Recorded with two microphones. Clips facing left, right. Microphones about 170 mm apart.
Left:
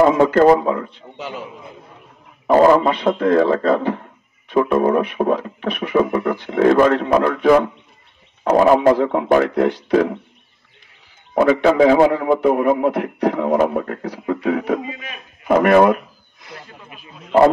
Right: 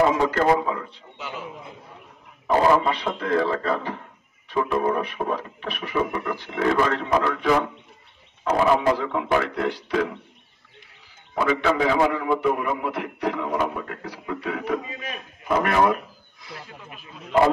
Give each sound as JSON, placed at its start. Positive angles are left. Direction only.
{"t": 0.2, "sound": "speech", "side_deg": 55}
{"t": 2.4, "sound": "speech", "side_deg": 50}
{"t": 11.7, "sound": "speech", "side_deg": 55}
{"t": 12.1, "sound": "speech", "side_deg": 40}